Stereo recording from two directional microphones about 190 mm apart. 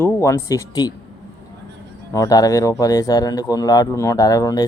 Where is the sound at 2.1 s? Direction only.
20° left (ahead or behind).